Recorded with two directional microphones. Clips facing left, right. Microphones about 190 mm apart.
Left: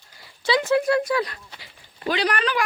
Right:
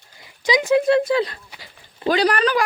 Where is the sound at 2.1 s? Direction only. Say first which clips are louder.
Right 5 dB; 35° right (ahead or behind).